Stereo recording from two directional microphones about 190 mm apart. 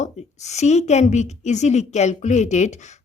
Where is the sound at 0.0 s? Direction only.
35° left (ahead or behind).